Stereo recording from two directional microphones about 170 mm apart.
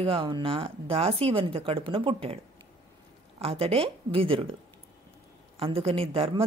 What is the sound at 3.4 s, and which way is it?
Speech, 35° right (ahead or behind).